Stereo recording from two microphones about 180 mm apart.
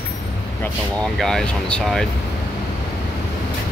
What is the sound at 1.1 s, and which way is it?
Speech, centre (ahead or behind).